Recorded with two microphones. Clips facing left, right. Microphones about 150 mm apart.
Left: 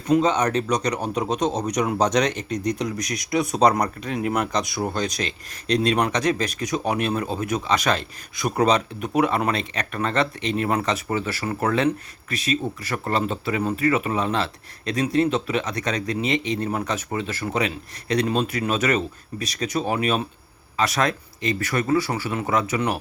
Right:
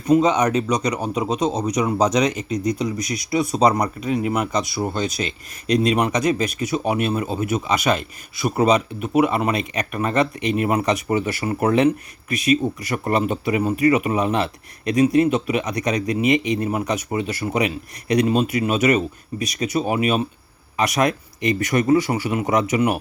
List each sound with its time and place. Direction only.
0.1 s speech: 10° right (ahead or behind)